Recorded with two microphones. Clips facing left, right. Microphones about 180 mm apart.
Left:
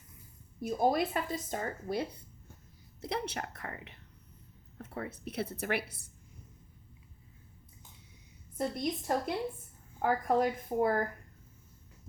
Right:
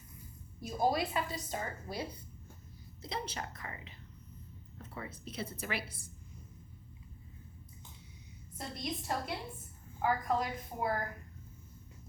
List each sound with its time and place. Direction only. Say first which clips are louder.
0.6 s a woman's voice: left 3 dB; 55° left (ahead or behind)
3.0 s a woman's voice: left 4 dB; 65° left (ahead or behind)
8.5 s a woman's voice: left 7 dB; 50° left (ahead or behind)